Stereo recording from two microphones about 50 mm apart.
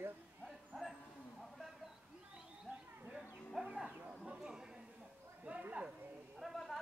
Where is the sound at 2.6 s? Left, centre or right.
Right.